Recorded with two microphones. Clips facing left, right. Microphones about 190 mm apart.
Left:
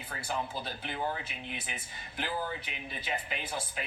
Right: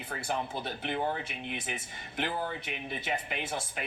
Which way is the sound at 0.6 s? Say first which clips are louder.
Right 3 dB; 60° right (ahead or behind).